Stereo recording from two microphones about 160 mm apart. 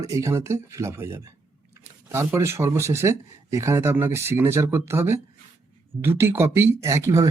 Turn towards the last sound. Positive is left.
turn(degrees=-20)  # may be behind; listen again after turning